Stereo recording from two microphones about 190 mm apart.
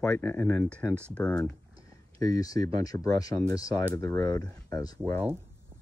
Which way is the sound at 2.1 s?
20° left (ahead or behind).